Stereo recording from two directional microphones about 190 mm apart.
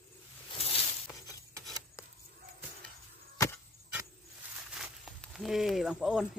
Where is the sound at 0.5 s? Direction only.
30° left (ahead or behind).